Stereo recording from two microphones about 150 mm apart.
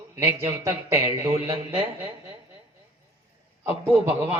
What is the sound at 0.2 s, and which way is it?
A man's voice, 15° right (ahead or behind).